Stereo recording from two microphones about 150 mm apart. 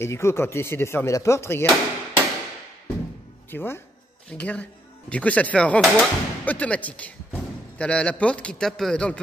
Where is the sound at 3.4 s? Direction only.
15° left (ahead or behind).